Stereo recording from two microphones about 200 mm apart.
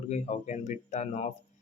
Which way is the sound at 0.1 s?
35° left (ahead or behind).